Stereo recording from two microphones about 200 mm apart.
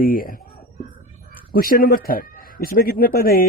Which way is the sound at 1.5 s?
45° left (ahead or behind).